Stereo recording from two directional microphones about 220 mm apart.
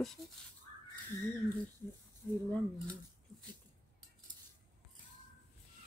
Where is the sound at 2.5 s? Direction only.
10° left (ahead or behind).